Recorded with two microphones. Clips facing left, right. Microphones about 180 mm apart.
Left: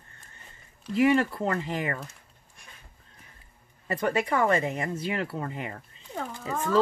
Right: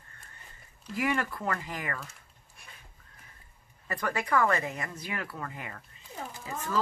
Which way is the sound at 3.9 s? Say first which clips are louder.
Left 3 dB; 25° left (ahead or behind).